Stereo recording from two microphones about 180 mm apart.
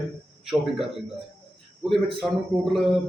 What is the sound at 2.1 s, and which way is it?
Speech, centre (ahead or behind).